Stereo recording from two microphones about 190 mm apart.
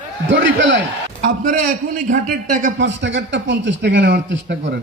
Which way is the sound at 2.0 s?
40° right (ahead or behind).